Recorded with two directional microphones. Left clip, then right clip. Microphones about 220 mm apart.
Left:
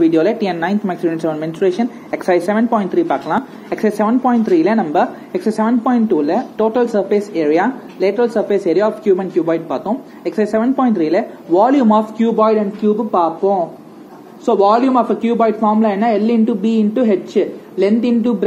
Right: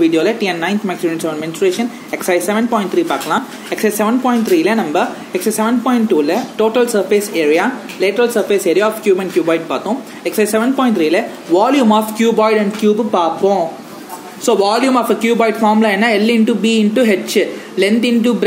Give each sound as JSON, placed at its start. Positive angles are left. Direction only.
{"t": 0.0, "sound": "speech", "side_deg": 5}
{"t": 12.2, "sound": "speech", "side_deg": -15}